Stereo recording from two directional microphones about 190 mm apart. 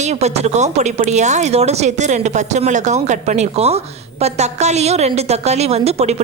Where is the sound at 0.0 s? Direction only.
35° right (ahead or behind).